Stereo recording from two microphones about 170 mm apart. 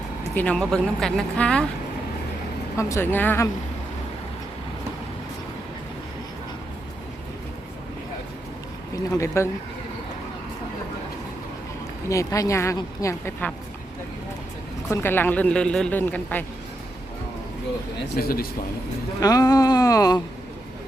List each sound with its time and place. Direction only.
0.3 s speech: 5° left (ahead or behind)
2.7 s a woman's voice: 15° left (ahead or behind)
9.1 s a woman's voice: 15° left (ahead or behind)
12.0 s a woman's voice: 20° left (ahead or behind)
14.8 s a woman's voice: 10° left (ahead or behind)
18.2 s speech: 60° left (ahead or behind)
19.2 s speech: 20° left (ahead or behind)